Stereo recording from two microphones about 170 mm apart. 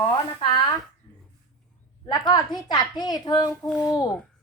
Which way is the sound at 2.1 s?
25° left (ahead or behind).